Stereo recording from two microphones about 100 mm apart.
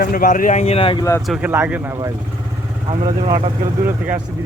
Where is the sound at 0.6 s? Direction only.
70° left (ahead or behind).